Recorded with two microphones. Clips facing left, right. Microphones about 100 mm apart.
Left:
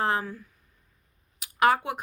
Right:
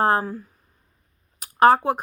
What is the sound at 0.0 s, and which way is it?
Speech, 40° right (ahead or behind).